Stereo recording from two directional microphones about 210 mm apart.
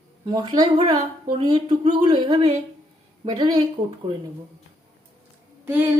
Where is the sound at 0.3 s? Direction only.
20° right (ahead or behind).